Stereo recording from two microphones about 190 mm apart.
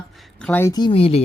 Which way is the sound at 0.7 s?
25° left (ahead or behind).